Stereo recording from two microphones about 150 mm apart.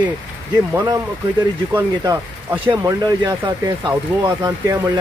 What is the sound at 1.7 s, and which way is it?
Speech, 15° right (ahead or behind).